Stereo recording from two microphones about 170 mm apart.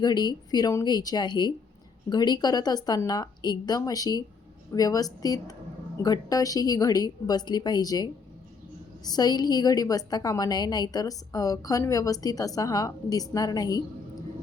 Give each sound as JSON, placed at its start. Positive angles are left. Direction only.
{"t": 0.0, "sound": "a woman's voice", "side_deg": 25}